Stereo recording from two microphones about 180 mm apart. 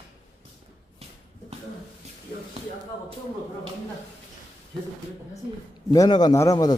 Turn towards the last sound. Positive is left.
turn(degrees=20)  # may be behind; listen again after turning